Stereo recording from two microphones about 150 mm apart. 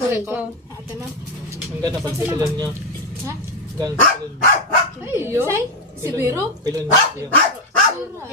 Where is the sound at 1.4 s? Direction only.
25° right (ahead or behind).